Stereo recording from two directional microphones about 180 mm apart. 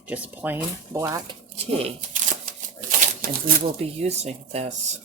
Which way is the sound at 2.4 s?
50° right (ahead or behind).